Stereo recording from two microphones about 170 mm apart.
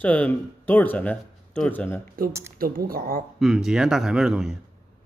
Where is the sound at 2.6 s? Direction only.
60° right (ahead or behind).